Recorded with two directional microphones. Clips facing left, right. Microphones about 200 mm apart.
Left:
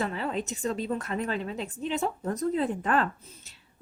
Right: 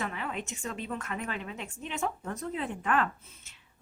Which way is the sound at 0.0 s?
35° left (ahead or behind).